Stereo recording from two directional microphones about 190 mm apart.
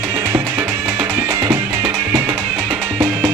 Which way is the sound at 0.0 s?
15° right (ahead or behind).